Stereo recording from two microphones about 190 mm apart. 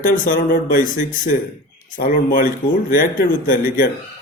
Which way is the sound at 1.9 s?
50° left (ahead or behind).